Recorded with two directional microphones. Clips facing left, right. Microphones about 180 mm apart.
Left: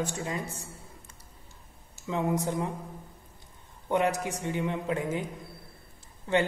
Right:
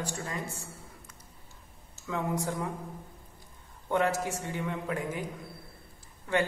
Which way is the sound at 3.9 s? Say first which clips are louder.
Left 1 dB; 15° left (ahead or behind).